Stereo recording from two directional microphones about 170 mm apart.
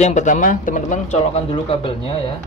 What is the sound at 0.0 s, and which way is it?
Speech, 45° left (ahead or behind).